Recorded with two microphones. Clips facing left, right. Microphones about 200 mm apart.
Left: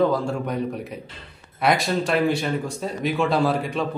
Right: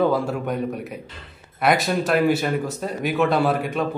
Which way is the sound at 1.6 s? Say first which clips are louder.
Right 1 dB; centre (ahead or behind).